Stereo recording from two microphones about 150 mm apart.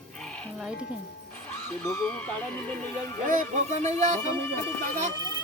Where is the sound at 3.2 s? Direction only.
60° right (ahead or behind).